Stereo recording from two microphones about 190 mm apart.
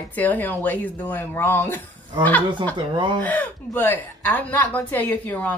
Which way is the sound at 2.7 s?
25° right (ahead or behind).